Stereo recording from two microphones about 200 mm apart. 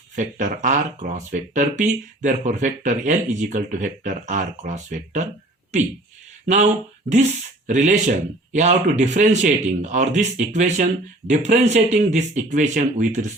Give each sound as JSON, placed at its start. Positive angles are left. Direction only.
{"t": 0.2, "sound": "speech", "side_deg": -40}
{"t": 6.4, "sound": "speech", "side_deg": -35}
{"t": 7.7, "sound": "speech", "side_deg": -40}